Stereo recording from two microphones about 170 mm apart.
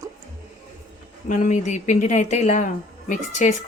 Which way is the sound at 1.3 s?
45° left (ahead or behind).